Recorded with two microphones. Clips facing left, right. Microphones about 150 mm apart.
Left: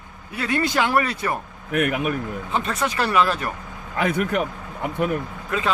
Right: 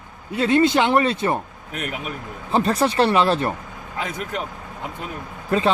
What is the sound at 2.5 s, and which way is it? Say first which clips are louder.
Speech: right 7 dB; 35° right (ahead or behind).